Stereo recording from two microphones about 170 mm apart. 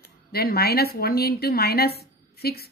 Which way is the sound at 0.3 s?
65° left (ahead or behind).